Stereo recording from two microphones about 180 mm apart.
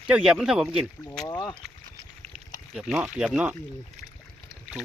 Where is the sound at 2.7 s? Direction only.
5° right (ahead or behind).